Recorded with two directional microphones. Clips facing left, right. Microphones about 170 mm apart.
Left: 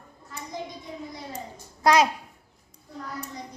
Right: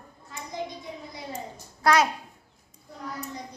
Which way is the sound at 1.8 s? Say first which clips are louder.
Left 2 dB; 20° left (ahead or behind).